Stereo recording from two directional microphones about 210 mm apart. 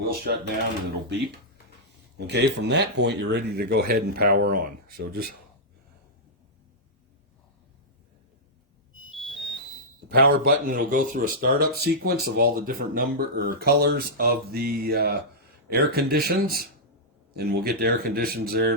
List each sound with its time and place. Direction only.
0.0 s speech: 45° right (ahead or behind)
2.1 s speech: 55° right (ahead or behind)
9.1 s smoke detector: centre (ahead or behind)
10.1 s speech: 45° right (ahead or behind)